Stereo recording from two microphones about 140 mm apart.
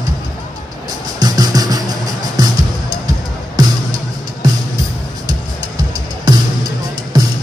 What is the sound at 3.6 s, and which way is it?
Music, 30° right (ahead or behind).